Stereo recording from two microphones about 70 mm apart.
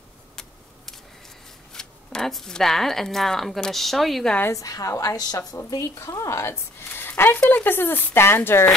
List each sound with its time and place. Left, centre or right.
0.4 s a sound: centre
1.7 s speech: centre
4.5 s a woman's voice: left
5.7 s a woman's voice: left